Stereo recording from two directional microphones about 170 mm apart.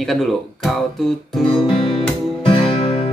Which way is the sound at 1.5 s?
30° left (ahead or behind).